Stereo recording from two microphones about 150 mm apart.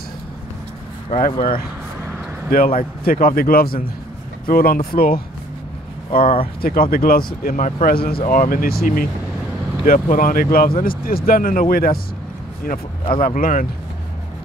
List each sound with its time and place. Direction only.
1.1 s speech: 70° left (ahead or behind)
6.4 s speech: 75° left (ahead or behind)
8.3 s speech: 70° left (ahead or behind)
9.8 s speech: 65° left (ahead or behind); by 12.0 s 80° left
13.2 s speech: 70° left (ahead or behind)